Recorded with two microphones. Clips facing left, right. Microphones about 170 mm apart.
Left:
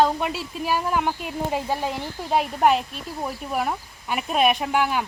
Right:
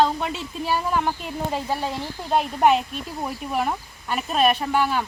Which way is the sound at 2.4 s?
Centre (ahead or behind).